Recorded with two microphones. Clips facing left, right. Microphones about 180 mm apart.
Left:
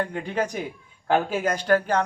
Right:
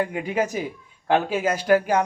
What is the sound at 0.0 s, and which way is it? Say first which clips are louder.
A man's voice: right 2 dB; 10° right (ahead or behind).